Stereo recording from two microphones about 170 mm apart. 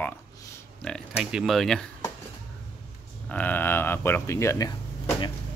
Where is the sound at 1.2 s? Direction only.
5° right (ahead or behind).